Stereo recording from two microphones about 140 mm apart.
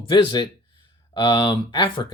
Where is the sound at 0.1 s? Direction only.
35° left (ahead or behind).